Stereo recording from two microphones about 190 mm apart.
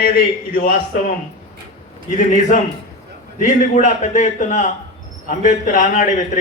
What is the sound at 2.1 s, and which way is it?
A man's voice, 40° left (ahead or behind).